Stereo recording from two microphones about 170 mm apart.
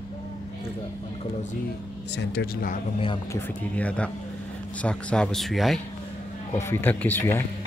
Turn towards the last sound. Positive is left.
turn(degrees=10)  # may be behind; listen again after turning